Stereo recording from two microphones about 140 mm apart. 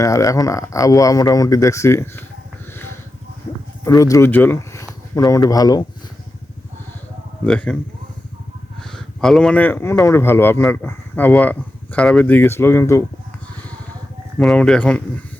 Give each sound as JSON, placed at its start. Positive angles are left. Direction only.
{"t": 0.0, "sound": "speech", "side_deg": 25}
{"t": 3.8, "sound": "speech", "side_deg": 25}
{"t": 7.4, "sound": "a man's voice", "side_deg": 5}
{"t": 8.8, "sound": "a man's voice", "side_deg": 5}
{"t": 14.3, "sound": "a man's voice", "side_deg": 5}